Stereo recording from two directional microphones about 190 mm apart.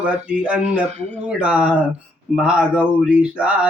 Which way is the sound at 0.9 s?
35° right (ahead or behind).